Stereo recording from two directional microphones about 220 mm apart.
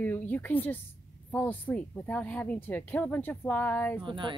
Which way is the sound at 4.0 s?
20° right (ahead or behind).